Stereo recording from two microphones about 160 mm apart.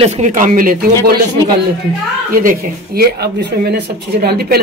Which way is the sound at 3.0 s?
90° right.